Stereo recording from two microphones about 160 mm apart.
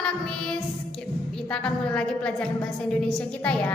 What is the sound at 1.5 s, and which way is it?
A woman's voice, 5° left (ahead or behind).